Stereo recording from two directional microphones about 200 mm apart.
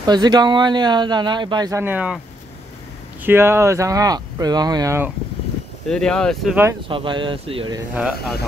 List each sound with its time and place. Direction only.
0.0 s speech: 20° right (ahead or behind)
3.3 s speech: 10° right (ahead or behind)
5.9 s speech: 5° left (ahead or behind)
6.5 s speech: 10° right (ahead or behind)
6.9 s speech: 25° right (ahead or behind)
7.9 s speech: 5° right (ahead or behind)